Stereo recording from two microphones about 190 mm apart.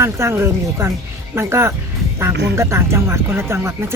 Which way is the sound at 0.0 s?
15° right (ahead or behind).